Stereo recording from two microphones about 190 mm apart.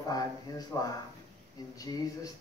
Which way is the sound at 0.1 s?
20° left (ahead or behind).